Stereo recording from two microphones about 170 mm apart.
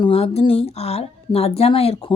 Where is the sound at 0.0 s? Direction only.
35° left (ahead or behind).